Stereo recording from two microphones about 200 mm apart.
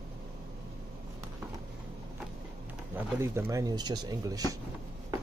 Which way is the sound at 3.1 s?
10° right (ahead or behind).